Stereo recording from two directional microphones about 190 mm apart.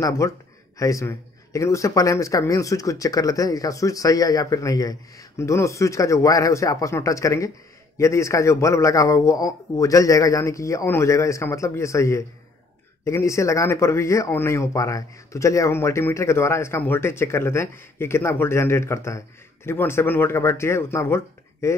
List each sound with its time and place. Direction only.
0.2 s speech: 15° left (ahead or behind)